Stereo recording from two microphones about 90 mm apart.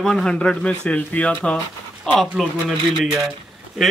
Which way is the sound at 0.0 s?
5° left (ahead or behind).